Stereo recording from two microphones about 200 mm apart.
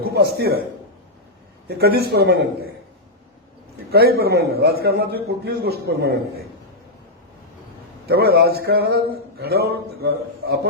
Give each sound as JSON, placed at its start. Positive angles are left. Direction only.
{"t": 0.0, "sound": "a man's voice", "side_deg": -55}
{"t": 1.6, "sound": "speech", "side_deg": -50}
{"t": 3.9, "sound": "speech", "side_deg": -50}
{"t": 8.0, "sound": "speech", "side_deg": -55}